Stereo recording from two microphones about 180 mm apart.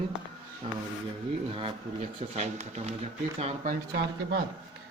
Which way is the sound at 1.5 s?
30° right (ahead or behind).